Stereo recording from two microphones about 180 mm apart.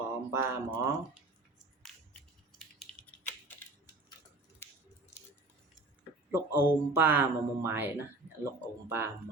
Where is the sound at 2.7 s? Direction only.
5° left (ahead or behind).